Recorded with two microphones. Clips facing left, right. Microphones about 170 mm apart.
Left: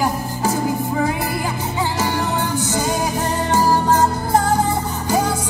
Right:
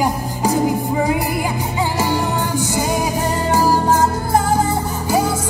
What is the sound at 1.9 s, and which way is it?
Music, 10° right (ahead or behind).